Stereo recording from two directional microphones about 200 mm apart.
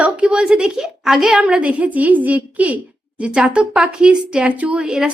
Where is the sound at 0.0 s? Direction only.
5° right (ahead or behind).